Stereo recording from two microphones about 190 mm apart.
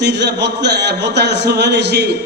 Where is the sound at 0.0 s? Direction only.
65° right (ahead or behind).